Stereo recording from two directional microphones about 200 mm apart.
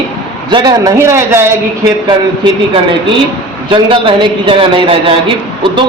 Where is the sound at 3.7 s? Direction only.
25° right (ahead or behind).